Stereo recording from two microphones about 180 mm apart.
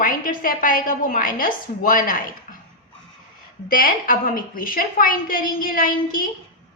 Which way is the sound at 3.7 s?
50° left (ahead or behind).